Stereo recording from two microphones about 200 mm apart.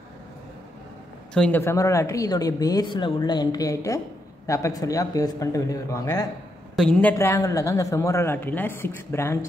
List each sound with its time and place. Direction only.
1.3 s speech: 5° left (ahead or behind)
6.8 s speech: 5° left (ahead or behind)